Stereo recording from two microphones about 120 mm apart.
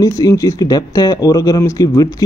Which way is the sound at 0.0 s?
30° left (ahead or behind).